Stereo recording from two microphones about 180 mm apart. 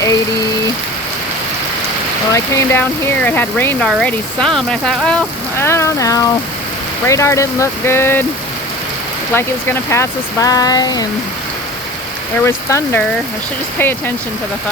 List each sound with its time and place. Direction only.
2.3 s speech: 15° left (ahead or behind)
9.3 s speech: 15° left (ahead or behind)
12.4 s speech: 15° left (ahead or behind)